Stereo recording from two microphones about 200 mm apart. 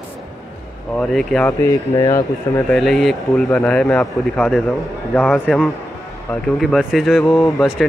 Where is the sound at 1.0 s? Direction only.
Centre (ahead or behind).